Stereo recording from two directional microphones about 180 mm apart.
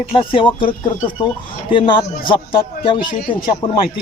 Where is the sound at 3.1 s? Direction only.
50° left (ahead or behind).